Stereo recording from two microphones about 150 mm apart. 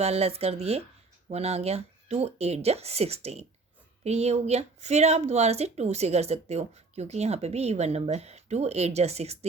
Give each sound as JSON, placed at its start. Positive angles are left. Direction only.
{"t": 0.0, "sound": "a woman's voice", "side_deg": -45}